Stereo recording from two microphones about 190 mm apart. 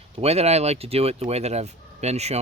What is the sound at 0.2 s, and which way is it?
Speech, 35° right (ahead or behind).